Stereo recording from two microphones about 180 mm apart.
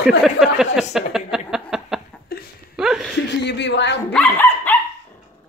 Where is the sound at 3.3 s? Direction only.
70° left (ahead or behind).